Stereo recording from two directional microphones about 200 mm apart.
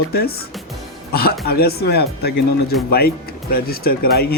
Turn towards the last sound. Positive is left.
turn(degrees=50)  # may be behind; listen again after turning